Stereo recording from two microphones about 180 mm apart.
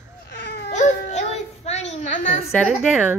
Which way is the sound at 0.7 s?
40° left (ahead or behind).